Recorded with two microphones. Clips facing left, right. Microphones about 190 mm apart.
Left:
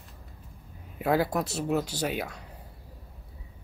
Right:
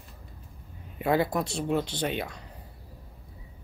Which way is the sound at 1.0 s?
5° left (ahead or behind).